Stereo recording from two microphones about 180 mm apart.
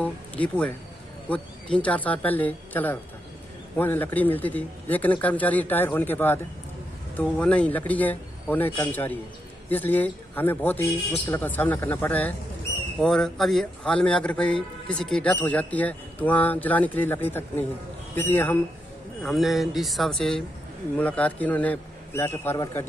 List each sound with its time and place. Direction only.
0.0 s a man's voice: 10° left (ahead or behind)
19.2 s a man's voice: centre (ahead or behind)